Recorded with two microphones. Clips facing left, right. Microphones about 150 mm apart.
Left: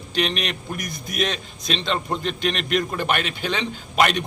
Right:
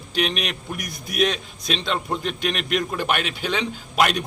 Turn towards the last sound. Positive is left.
turn(degrees=0)  # may be behind; listen again after turning